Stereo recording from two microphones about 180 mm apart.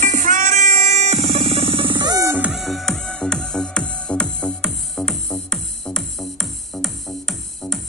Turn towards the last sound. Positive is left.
turn(degrees=5)  # may be behind; listen again after turning